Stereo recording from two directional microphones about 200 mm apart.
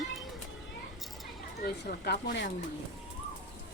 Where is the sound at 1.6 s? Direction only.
50° left (ahead or behind).